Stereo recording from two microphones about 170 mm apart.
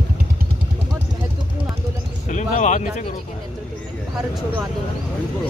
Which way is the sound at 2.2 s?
45° left (ahead or behind).